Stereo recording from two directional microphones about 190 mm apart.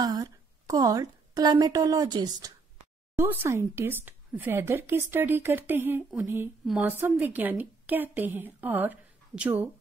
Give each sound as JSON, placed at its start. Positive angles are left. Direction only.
{"t": 0.0, "sound": "a woman's voice", "side_deg": -20}